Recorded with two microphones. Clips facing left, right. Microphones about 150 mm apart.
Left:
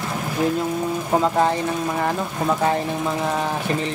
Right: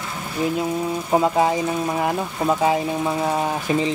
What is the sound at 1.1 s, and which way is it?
Speech, 10° right (ahead or behind).